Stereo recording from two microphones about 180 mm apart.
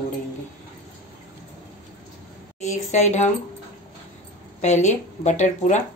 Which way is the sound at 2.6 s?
40° left (ahead or behind).